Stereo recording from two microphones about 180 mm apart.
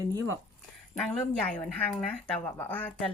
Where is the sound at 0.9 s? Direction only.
5° left (ahead or behind).